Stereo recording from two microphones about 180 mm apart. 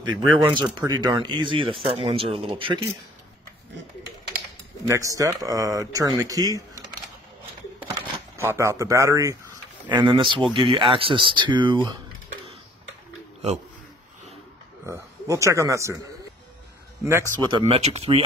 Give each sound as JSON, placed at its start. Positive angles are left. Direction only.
{"t": 0.0, "sound": "speech", "side_deg": -25}
{"t": 4.8, "sound": "speech", "side_deg": -20}
{"t": 7.9, "sound": "speech", "side_deg": -15}
{"t": 14.9, "sound": "a man's voice", "side_deg": -15}
{"t": 17.5, "sound": "speech", "side_deg": -30}